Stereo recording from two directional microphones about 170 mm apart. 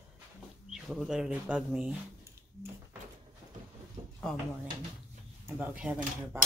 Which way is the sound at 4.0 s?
30° right (ahead or behind).